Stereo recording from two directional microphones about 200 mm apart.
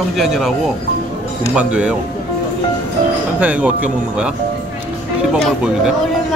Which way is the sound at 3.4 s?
5° right (ahead or behind).